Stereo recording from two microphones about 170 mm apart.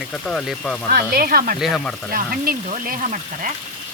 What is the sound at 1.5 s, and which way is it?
Speech, centre (ahead or behind).